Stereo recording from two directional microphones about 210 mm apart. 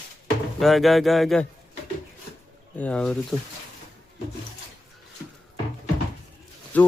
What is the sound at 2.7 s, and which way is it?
Speech, 5° left (ahead or behind).